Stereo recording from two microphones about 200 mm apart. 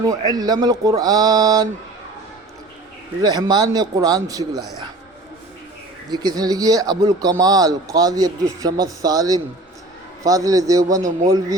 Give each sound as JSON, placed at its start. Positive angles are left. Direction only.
{"t": 0.3, "sound": "speech", "side_deg": -20}
{"t": 3.2, "sound": "speech", "side_deg": -20}
{"t": 6.1, "sound": "a man's voice", "side_deg": -20}